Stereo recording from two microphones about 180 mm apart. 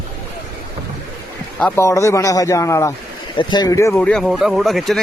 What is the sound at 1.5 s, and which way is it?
A man's voice, 10° left (ahead or behind).